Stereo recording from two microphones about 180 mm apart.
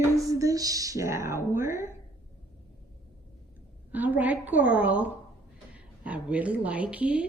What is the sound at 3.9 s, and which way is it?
Speech, 10° right (ahead or behind).